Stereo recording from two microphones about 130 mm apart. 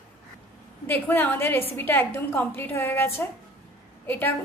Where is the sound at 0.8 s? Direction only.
15° left (ahead or behind).